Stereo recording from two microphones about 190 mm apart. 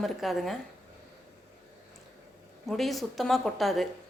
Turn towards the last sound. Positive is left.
turn(degrees=0)  # may be behind; listen again after turning